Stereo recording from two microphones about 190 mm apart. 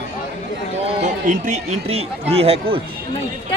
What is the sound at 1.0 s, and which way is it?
A man's voice, 40° right (ahead or behind).